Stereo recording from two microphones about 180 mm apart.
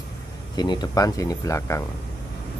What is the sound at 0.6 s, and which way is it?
Speech, 25° left (ahead or behind).